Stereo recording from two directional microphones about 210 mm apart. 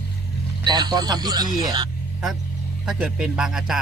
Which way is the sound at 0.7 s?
20° right (ahead or behind).